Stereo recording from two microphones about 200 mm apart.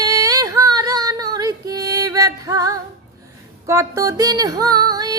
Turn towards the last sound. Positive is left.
turn(degrees=-20)  # may be behind; listen again after turning